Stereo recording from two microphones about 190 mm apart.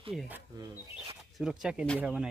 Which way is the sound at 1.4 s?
5° right (ahead or behind).